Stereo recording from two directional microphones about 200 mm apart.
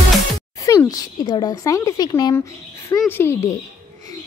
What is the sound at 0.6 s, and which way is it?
A woman's voice, 15° left (ahead or behind).